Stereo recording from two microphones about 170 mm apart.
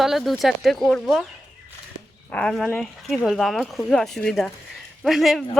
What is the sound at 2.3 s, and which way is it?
Speech, 5° left (ahead or behind).